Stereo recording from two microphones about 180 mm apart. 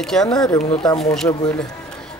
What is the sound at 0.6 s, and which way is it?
Speech, 30° left (ahead or behind).